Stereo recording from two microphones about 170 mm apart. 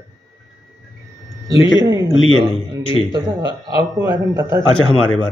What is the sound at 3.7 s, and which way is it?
Speech, 20° right (ahead or behind).